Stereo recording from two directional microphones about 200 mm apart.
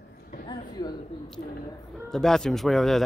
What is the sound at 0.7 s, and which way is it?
Speech, 20° left (ahead or behind).